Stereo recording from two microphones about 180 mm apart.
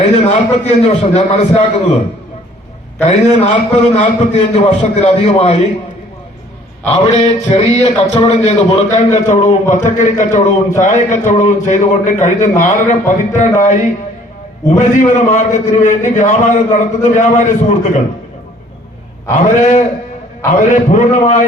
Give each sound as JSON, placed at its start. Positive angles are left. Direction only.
{"t": 0.6, "sound": "a man's voice", "side_deg": 40}
{"t": 3.1, "sound": "a man's voice", "side_deg": 40}
{"t": 6.9, "sound": "a man's voice", "side_deg": 35}
{"t": 19.5, "sound": "a man's voice", "side_deg": 40}